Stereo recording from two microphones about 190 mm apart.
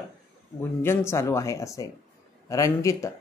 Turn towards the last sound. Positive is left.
turn(degrees=15)  # may be behind; listen again after turning